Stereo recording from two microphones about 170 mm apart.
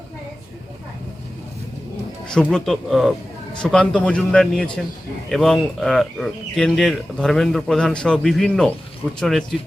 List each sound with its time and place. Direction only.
2.5 s speech: centre (ahead or behind)